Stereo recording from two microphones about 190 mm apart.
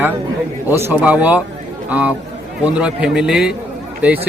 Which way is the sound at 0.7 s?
10° right (ahead or behind).